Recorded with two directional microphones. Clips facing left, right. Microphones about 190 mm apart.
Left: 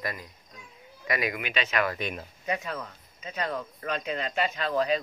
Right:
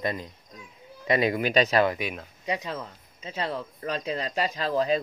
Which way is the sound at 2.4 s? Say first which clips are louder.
Right 1 dB; 20° right (ahead or behind).